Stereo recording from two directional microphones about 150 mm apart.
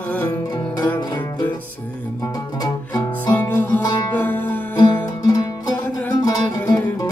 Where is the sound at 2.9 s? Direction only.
15° left (ahead or behind).